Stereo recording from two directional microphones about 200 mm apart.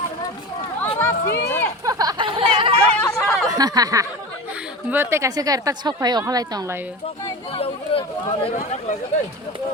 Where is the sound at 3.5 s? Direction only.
20° right (ahead or behind).